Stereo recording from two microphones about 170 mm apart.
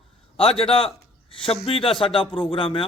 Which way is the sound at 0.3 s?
35° left (ahead or behind).